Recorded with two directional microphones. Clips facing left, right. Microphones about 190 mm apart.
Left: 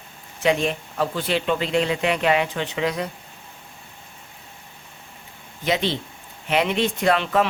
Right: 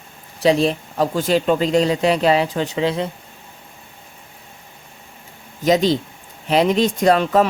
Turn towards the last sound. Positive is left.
turn(degrees=-40)  # may be behind; listen again after turning